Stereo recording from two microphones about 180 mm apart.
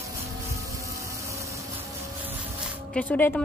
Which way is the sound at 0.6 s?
15° right (ahead or behind).